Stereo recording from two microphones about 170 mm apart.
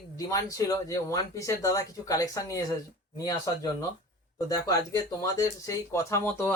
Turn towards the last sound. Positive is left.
turn(degrees=15)  # may be behind; listen again after turning